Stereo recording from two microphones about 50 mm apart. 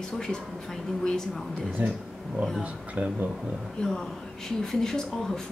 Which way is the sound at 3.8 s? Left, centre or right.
Centre.